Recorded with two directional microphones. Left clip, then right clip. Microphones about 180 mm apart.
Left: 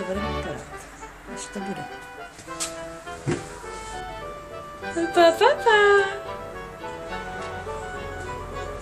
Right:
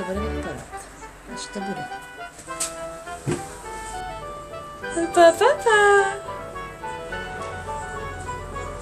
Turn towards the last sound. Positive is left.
turn(degrees=0)  # may be behind; listen again after turning